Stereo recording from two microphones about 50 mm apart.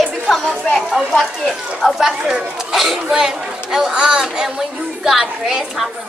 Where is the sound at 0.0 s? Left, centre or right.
Centre.